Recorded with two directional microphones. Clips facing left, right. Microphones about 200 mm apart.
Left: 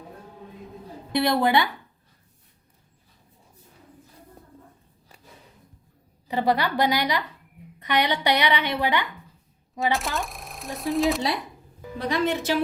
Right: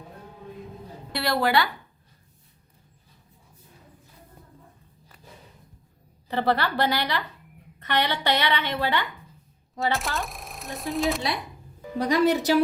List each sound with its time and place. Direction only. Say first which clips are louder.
1.1 s a woman's voice: left 3 dB; 20° left (ahead or behind)
6.2 s a woman's voice: left 1 dB; 15° left (ahead or behind)
9.9 s speech: left 2 dB; centre (ahead or behind)
11.9 s a woman's voice: right 4 dB; 40° right (ahead or behind)